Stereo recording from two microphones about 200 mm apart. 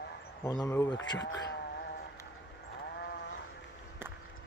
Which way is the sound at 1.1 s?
65° left (ahead or behind).